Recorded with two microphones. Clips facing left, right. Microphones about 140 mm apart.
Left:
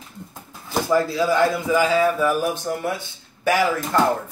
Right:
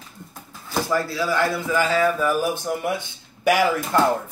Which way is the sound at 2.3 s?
Centre (ahead or behind).